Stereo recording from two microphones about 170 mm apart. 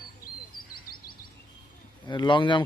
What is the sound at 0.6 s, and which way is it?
Bird, 60° left (ahead or behind).